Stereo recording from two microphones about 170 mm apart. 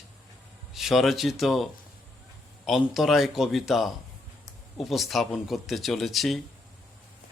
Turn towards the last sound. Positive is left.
turn(degrees=0)  # may be behind; listen again after turning